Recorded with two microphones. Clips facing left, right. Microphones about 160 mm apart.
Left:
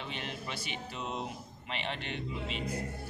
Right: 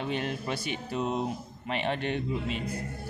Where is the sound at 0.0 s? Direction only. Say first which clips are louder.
Right 9 dB; 45° right (ahead or behind).